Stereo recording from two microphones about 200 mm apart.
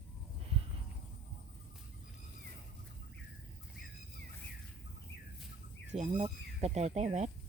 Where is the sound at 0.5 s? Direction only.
30° right (ahead or behind).